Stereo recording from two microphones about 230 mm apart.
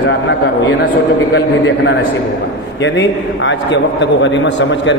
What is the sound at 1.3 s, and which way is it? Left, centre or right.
A man's voice, left.